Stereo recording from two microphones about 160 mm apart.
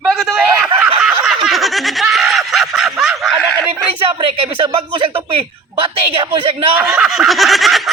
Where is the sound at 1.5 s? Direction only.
Centre (ahead or behind).